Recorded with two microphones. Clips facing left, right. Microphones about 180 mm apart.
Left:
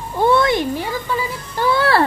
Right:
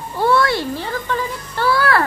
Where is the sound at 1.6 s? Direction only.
25° left (ahead or behind).